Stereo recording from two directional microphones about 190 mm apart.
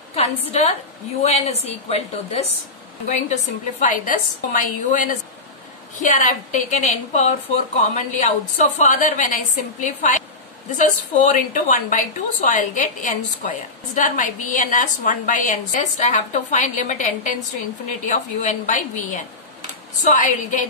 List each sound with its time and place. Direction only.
0.1 s a woman's voice: 35° left (ahead or behind)
3.8 s a woman's voice: 45° left (ahead or behind)